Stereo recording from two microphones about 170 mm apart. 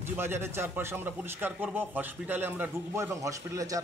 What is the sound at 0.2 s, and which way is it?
A man's voice, 15° right (ahead or behind).